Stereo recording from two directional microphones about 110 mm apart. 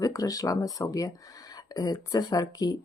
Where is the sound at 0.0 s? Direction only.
35° left (ahead or behind).